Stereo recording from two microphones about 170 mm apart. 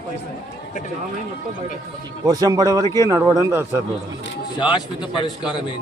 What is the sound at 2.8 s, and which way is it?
Speech, 20° left (ahead or behind).